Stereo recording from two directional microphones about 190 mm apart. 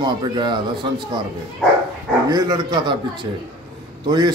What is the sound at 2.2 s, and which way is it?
A man's voice, 20° right (ahead or behind).